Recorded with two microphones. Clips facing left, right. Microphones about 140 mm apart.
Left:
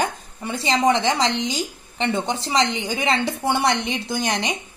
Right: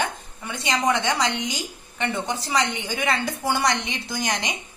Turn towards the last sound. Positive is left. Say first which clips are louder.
# left 4 dB
turn(degrees=30)  # may be behind; listen again after turning